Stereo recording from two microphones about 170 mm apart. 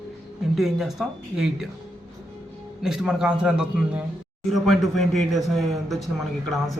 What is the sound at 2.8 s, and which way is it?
A man's voice, centre (ahead or behind).